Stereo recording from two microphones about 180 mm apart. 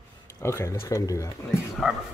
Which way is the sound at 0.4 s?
15° left (ahead or behind).